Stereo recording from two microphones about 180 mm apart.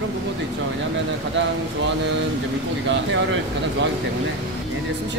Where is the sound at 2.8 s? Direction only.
90° right.